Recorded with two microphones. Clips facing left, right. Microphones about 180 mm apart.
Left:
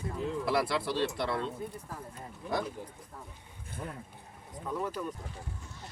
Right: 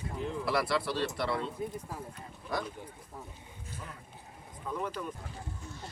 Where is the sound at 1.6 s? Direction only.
15° right (ahead or behind).